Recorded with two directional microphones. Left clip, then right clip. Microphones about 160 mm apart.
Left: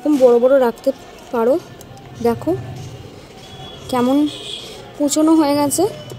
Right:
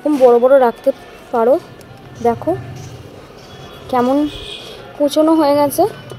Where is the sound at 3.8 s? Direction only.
40° left (ahead or behind).